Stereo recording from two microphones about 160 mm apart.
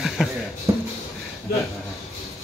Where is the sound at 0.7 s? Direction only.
20° right (ahead or behind).